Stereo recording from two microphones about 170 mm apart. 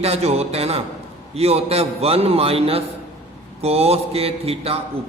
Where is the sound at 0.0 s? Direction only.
40° right (ahead or behind).